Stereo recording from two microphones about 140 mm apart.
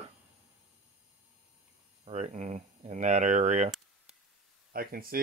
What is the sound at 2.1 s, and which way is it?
Speech, 55° right (ahead or behind).